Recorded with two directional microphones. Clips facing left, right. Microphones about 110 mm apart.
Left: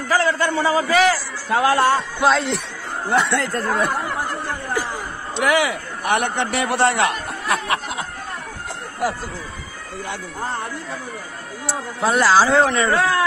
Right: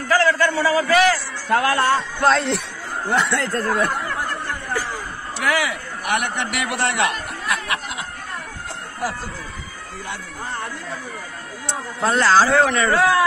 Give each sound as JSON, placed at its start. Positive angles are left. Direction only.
{"t": 0.1, "sound": "a man's voice", "side_deg": 20}
{"t": 2.2, "sound": "speech", "side_deg": 0}
{"t": 3.1, "sound": "speech", "side_deg": 15}
{"t": 3.6, "sound": "speech", "side_deg": 5}
{"t": 4.1, "sound": "chatter", "side_deg": 20}
{"t": 11.6, "sound": "speech", "side_deg": 10}
{"t": 12.6, "sound": "a man's voice", "side_deg": 30}